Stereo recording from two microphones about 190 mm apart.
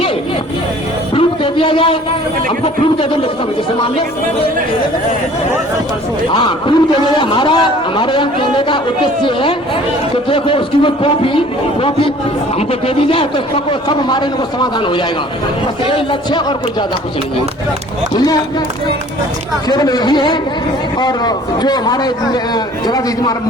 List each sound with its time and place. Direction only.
1.1 s a sound: 25° left (ahead or behind)
2.5 s a man's voice: 30° left (ahead or behind)
6.3 s a man's voice: 25° left (ahead or behind)
19.6 s a man's voice: 20° left (ahead or behind)